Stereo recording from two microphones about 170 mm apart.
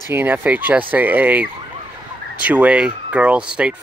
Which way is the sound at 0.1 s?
10° right (ahead or behind).